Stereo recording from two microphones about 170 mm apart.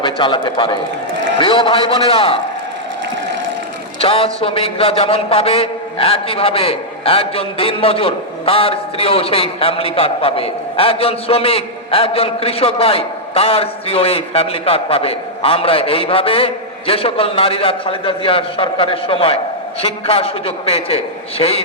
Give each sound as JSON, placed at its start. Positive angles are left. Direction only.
{"t": 0.0, "sound": "a man's voice", "side_deg": 30}
{"t": 4.0, "sound": "a man's voice", "side_deg": 35}